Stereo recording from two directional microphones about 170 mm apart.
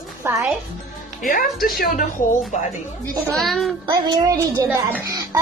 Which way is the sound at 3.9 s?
20° right (ahead or behind).